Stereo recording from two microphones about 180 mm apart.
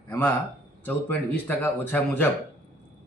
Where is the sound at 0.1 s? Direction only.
10° left (ahead or behind).